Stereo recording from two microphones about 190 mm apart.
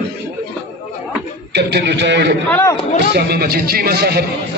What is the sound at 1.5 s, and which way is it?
A man's voice, 65° right (ahead or behind).